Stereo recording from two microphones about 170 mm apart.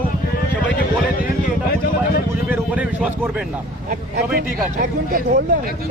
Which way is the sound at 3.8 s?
60° right (ahead or behind).